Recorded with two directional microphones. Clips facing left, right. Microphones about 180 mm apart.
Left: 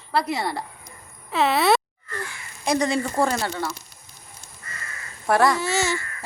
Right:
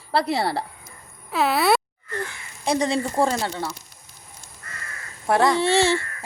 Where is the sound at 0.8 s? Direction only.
Centre (ahead or behind).